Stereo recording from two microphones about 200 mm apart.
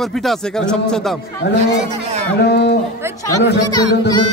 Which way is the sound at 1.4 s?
55° left (ahead or behind).